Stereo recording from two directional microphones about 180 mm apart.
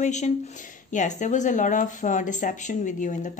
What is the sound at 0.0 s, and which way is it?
A woman's voice, 40° left (ahead or behind).